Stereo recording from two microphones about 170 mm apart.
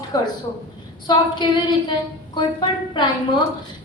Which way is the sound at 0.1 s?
20° left (ahead or behind).